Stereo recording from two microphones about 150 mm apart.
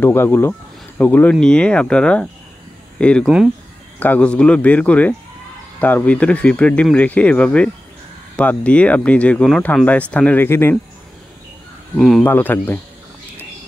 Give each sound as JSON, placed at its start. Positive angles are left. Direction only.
{"t": 0.0, "sound": "speech", "side_deg": 15}
{"t": 12.0, "sound": "speech", "side_deg": 0}
{"t": 12.3, "sound": "speech", "side_deg": 15}